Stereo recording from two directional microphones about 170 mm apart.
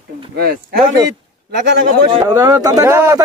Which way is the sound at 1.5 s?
75° right (ahead or behind).